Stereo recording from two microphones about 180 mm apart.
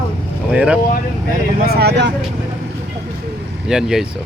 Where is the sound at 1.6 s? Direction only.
60° right (ahead or behind).